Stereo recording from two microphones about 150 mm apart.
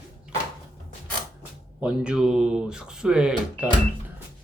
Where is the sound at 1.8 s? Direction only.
5° right (ahead or behind).